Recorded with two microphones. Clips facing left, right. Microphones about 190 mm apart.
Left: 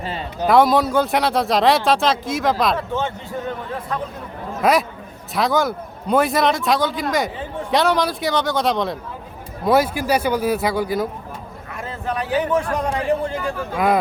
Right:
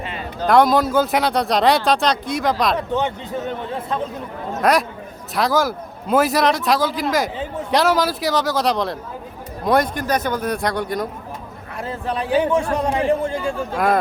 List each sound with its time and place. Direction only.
0.0 s a sound: 30° left (ahead or behind)
0.4 s speech: centre (ahead or behind)
2.7 s a man's voice: 15° right (ahead or behind)
4.6 s speech: centre (ahead or behind)
11.8 s a man's voice: 30° right (ahead or behind)
13.7 s speech: centre (ahead or behind)